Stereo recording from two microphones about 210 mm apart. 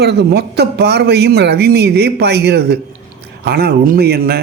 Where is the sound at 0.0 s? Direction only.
50° right (ahead or behind).